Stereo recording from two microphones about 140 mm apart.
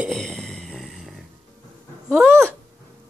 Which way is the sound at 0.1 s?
5° left (ahead or behind).